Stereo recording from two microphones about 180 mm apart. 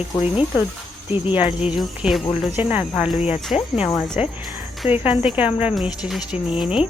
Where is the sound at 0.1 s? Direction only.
20° left (ahead or behind).